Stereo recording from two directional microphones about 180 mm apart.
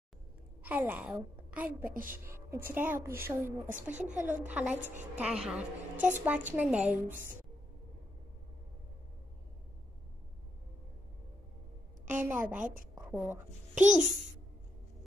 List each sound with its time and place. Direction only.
0.7 s a woman's voice: 10° right (ahead or behind)
1.9 s a woman's voice: 50° right (ahead or behind)
2.3 s a woman's voice: 15° right (ahead or behind)
3.6 s a woman's voice: 45° right (ahead or behind)
4.5 s a woman's voice: 10° right (ahead or behind)
12.1 s a woman's voice: 10° right (ahead or behind)
13.7 s a woman's voice: 45° right (ahead or behind)